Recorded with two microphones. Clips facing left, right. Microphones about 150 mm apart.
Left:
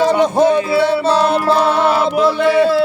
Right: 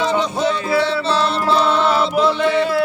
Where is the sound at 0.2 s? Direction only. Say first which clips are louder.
Left 7 dB; 55° left (ahead or behind).